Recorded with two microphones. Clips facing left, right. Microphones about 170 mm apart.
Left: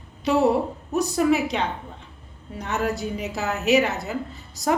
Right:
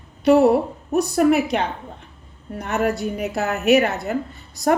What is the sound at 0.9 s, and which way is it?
Speech, 60° right (ahead or behind).